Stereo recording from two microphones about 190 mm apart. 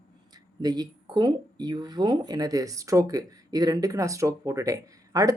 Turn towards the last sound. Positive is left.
turn(degrees=-20)  # may be behind; listen again after turning